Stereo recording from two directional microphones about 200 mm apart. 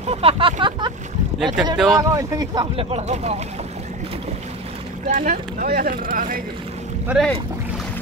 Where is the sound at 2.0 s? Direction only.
15° right (ahead or behind); by 3.3 s 30° right (ahead or behind).